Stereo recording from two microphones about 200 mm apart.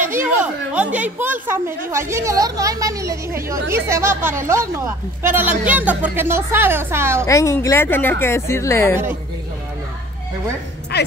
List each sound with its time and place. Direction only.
0.0 s a woman's voice: 10° right (ahead or behind)
7.2 s speech: 15° left (ahead or behind)
10.9 s a sound: 55° left (ahead or behind)